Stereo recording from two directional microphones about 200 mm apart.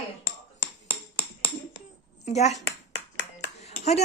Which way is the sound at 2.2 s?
35° left (ahead or behind).